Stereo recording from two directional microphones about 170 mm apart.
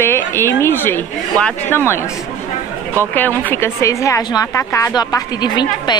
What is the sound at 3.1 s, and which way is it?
A woman's voice, 10° left (ahead or behind).